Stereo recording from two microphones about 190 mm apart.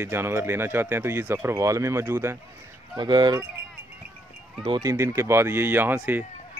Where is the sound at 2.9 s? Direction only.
25° right (ahead or behind).